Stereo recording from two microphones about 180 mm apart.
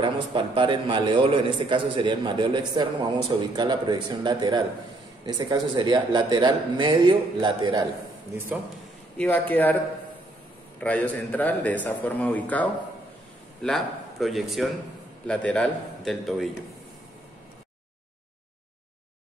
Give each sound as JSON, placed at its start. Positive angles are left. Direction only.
{"t": 0.0, "sound": "a man's voice", "side_deg": -25}
{"t": 9.2, "sound": "a man's voice", "side_deg": 10}
{"t": 10.8, "sound": "a man's voice", "side_deg": 10}